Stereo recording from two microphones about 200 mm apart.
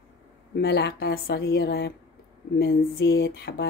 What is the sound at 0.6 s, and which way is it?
Speech, 55° left (ahead or behind).